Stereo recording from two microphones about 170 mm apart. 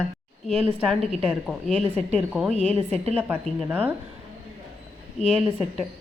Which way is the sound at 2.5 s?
40° right (ahead or behind).